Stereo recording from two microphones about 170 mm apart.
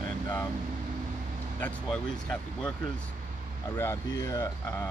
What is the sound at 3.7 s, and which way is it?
Speech, 15° left (ahead or behind).